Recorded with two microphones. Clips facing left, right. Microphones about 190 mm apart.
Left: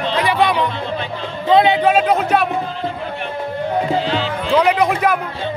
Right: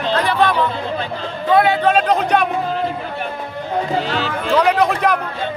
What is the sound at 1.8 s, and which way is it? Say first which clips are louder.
Speech: left 1 dB; 10° left (ahead or behind).